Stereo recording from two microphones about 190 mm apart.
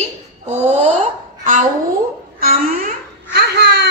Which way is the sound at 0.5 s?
35° right (ahead or behind).